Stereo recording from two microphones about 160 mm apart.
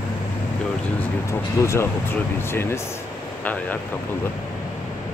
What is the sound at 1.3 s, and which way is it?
Speech, 15° left (ahead or behind).